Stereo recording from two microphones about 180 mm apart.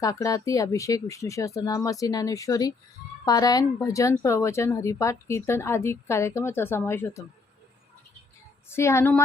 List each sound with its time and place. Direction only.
0.0 s a woman's voice: 20° left (ahead or behind)
8.7 s a woman's voice: 15° left (ahead or behind)